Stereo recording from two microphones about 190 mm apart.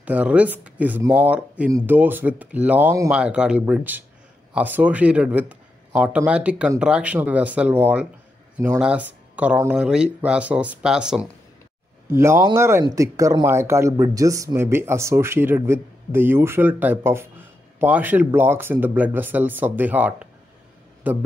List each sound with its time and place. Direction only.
0.0 s speech: 5° right (ahead or behind)